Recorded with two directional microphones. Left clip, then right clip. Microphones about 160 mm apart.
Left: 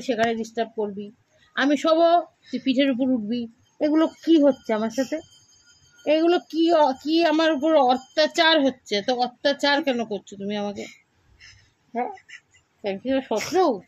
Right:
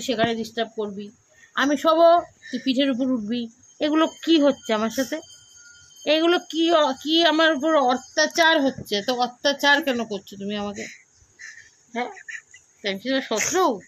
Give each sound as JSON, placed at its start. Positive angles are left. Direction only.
{"t": 0.0, "sound": "speech", "side_deg": -15}
{"t": 6.2, "sound": "speech", "side_deg": -15}
{"t": 12.8, "sound": "speech", "side_deg": -20}